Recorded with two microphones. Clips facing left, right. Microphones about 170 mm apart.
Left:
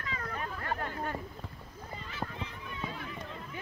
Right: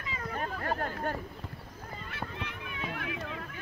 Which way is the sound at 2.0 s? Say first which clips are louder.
Even; 65° right (ahead or behind).